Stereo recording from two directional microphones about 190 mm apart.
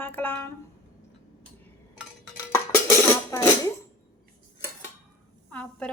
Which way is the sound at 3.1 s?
15° left (ahead or behind).